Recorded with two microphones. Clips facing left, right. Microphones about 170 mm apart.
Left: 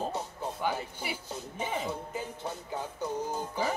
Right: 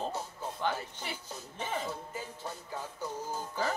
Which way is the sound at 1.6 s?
15° left (ahead or behind).